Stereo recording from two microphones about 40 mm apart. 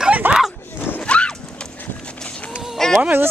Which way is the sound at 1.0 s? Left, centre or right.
Left.